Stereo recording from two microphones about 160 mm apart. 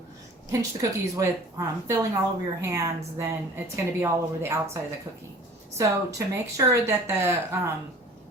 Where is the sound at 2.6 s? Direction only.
20° right (ahead or behind).